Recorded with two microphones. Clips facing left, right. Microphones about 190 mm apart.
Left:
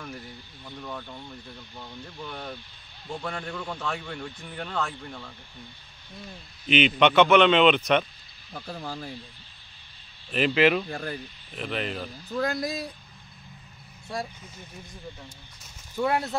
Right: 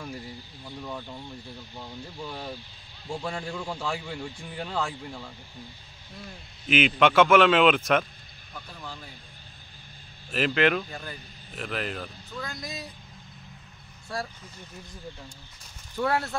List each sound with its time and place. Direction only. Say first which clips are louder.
0.7 s a man's voice: right 1 dB; 10° right (ahead or behind)
6.7 s a man's voice: left 1 dB; 5° right (ahead or behind)
8.7 s speech: left 7 dB; 40° left (ahead or behind)
10.3 s a man's voice: left 2 dB; centre (ahead or behind)
10.9 s speech: left 6 dB; 50° left (ahead or behind)
11.5 s a man's voice: left 1 dB; centre (ahead or behind)
12.4 s speech: left 10 dB; 60° left (ahead or behind)
14.1 s speech: left 1 dB; 20° left (ahead or behind)
16.0 s speech: left 1 dB; 20° left (ahead or behind)